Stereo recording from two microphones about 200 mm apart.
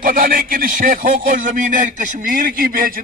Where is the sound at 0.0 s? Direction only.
45° right (ahead or behind).